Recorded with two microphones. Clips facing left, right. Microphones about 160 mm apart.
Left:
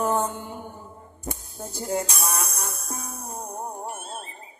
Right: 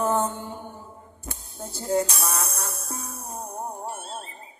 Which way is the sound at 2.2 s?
15° left (ahead or behind).